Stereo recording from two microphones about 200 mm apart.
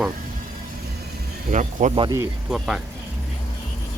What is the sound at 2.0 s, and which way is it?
Speech, 20° right (ahead or behind).